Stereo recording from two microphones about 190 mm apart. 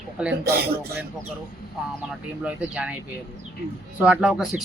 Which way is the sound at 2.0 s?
10° right (ahead or behind).